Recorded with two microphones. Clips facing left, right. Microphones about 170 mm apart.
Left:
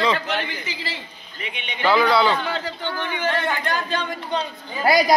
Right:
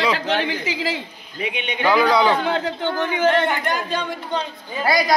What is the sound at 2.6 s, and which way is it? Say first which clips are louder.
Speech: right 5 dB; 50° right (ahead or behind).